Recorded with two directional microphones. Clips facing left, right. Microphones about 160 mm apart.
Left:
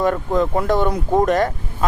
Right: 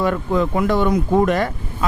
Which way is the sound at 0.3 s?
35° left (ahead or behind).